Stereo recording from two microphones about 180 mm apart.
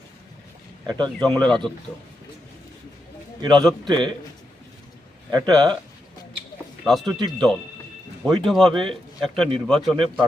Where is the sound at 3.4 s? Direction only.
25° right (ahead or behind).